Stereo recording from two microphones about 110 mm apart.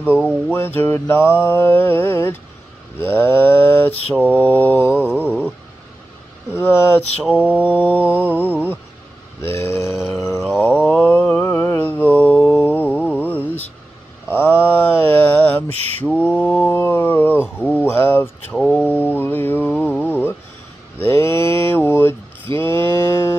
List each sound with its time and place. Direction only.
0.1 s mantra: 10° right (ahead or behind)
0.5 s mantra: 20° left (ahead or behind)
6.5 s mantra: 20° left (ahead or behind)
7.2 s mantra: 10° right (ahead or behind)
7.6 s mantra: 15° left (ahead or behind)
8.3 s mantra: 15° right (ahead or behind)
9.4 s a sound: 20° left (ahead or behind)
10.6 s mantra: 15° left (ahead or behind)
16.0 s mantra: 5° left (ahead or behind)
18.5 s mantra: centre (ahead or behind)
18.9 s music: 15° left (ahead or behind)
21.0 s mantra: 20° left (ahead or behind)